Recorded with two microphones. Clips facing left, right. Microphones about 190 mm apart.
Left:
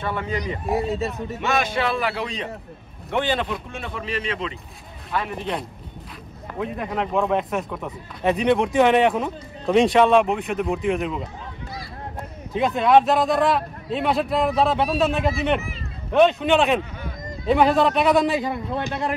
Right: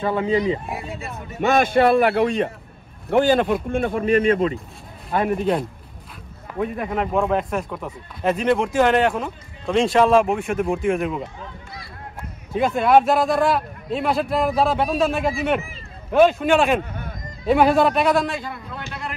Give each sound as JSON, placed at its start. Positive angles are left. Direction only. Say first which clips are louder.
{"t": 0.0, "sound": "speech", "louder": "right 7 dB", "side_deg": -30}
{"t": 0.7, "sound": "speech", "louder": "left 9 dB", "side_deg": 35}
{"t": 1.4, "sound": "a man's voice", "louder": "right 7 dB", "side_deg": -50}
{"t": 3.1, "sound": "a man's voice", "louder": "right 7 dB", "side_deg": -45}
{"t": 5.4, "sound": "speech", "louder": "right 7 dB", "side_deg": 0}
{"t": 12.5, "sound": "speech", "louder": "right 1 dB", "side_deg": 0}
{"t": 18.4, "sound": "a man's voice", "louder": "left 7 dB", "side_deg": 25}